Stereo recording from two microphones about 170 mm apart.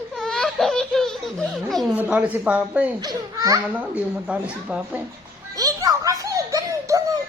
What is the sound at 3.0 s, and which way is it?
Speech, 20° right (ahead or behind).